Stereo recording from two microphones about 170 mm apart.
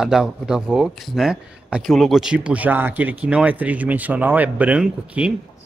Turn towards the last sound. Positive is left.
turn(degrees=-5)  # may be behind; listen again after turning